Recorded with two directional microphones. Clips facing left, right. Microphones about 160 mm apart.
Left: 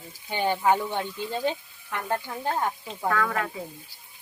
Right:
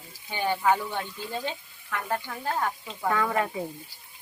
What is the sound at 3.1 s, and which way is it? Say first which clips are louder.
Speech: right 1 dB; 20° right (ahead or behind).